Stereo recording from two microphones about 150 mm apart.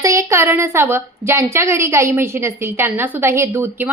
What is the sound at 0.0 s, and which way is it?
A woman's voice, 20° right (ahead or behind).